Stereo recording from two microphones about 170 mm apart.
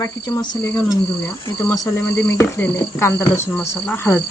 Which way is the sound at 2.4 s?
15° left (ahead or behind).